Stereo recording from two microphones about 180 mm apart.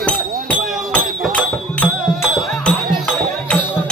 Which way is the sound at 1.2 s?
5° left (ahead or behind).